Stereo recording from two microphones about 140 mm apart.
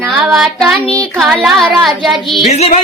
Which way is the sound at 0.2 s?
Centre (ahead or behind).